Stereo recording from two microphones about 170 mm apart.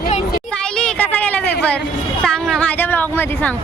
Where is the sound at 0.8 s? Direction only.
5° left (ahead or behind).